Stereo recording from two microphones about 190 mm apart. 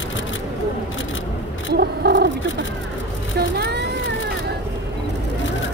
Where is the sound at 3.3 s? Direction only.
55° right (ahead or behind).